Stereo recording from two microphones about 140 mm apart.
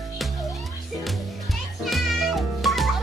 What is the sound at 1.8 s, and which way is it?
Music, centre (ahead or behind).